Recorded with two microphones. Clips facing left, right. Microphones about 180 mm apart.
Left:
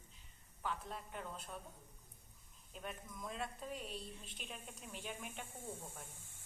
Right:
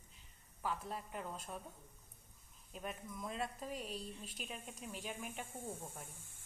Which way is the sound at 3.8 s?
35° right (ahead or behind).